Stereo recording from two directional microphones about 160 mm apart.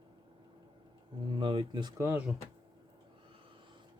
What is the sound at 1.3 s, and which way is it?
Speech, 30° right (ahead or behind).